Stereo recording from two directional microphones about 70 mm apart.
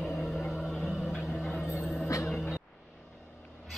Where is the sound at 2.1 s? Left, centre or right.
Left.